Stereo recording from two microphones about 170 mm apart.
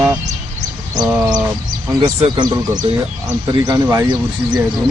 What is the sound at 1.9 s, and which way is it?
Speech, 25° right (ahead or behind).